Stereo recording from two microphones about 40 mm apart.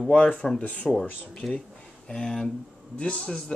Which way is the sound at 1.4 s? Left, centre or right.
Centre.